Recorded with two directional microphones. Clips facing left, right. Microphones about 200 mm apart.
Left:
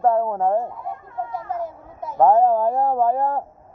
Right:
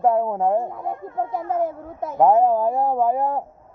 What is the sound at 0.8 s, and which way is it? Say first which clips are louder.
Speech: right 4 dB; 55° right (ahead or behind).